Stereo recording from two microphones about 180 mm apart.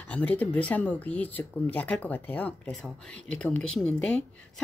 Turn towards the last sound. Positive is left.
turn(degrees=5)  # may be behind; listen again after turning